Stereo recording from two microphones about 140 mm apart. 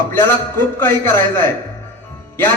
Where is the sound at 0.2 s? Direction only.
15° left (ahead or behind).